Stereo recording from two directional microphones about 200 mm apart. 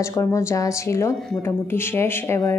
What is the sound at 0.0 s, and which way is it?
Speech, 15° left (ahead or behind).